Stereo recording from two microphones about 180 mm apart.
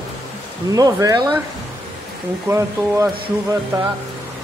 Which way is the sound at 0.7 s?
20° right (ahead or behind).